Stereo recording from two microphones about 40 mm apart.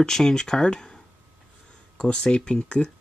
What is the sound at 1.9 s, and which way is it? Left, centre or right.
Speech, centre.